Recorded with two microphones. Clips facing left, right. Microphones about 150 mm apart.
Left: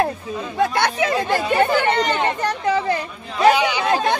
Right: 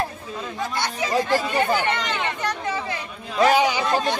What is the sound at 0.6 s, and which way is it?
Speech, 60° left (ahead or behind).